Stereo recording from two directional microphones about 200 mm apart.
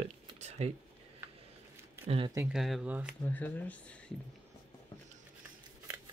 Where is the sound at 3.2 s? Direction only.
10° left (ahead or behind).